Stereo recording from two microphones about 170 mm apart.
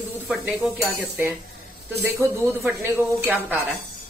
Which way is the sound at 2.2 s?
15° right (ahead or behind).